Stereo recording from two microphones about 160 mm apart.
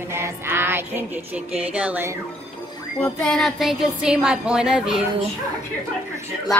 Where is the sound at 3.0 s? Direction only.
5° left (ahead or behind).